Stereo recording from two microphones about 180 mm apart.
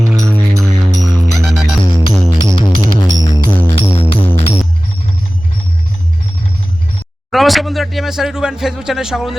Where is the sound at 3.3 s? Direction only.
15° right (ahead or behind).